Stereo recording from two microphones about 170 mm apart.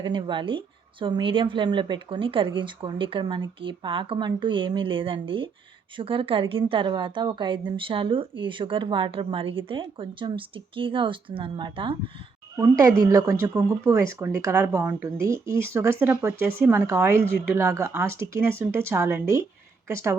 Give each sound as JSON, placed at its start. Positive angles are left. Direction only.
{"t": 0.0, "sound": "a woman's voice", "side_deg": -25}
{"t": 13.0, "sound": "speech", "side_deg": -15}